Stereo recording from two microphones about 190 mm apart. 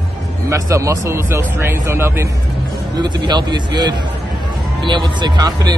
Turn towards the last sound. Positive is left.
turn(degrees=-20)  # may be behind; listen again after turning